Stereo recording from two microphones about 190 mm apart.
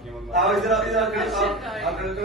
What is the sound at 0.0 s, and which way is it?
A man's voice, centre (ahead or behind).